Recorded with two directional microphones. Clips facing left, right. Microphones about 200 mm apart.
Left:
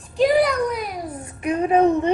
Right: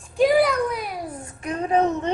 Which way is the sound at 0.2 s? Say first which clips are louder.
Left 1 dB; centre (ahead or behind).